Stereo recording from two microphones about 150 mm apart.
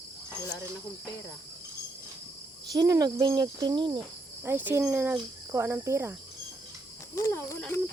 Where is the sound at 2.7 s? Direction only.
25° right (ahead or behind).